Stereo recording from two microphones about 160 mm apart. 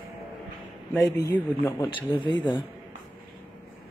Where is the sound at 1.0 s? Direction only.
20° left (ahead or behind).